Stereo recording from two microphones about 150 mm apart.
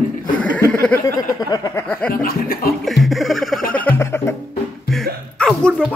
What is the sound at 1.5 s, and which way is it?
Speech, 20° left (ahead or behind).